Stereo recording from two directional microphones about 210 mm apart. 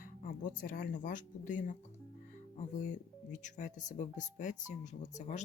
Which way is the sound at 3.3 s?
35° left (ahead or behind).